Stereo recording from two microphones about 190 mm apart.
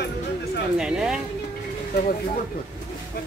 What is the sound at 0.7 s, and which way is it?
Speech, 5° right (ahead or behind).